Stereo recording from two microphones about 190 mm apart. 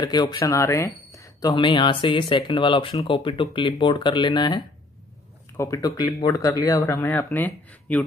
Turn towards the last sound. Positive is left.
turn(degrees=10)  # may be behind; listen again after turning